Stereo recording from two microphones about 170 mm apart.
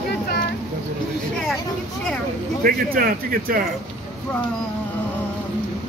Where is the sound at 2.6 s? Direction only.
55° right (ahead or behind).